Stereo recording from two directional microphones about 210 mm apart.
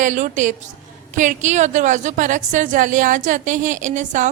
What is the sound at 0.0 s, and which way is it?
A woman's voice, 35° right (ahead or behind).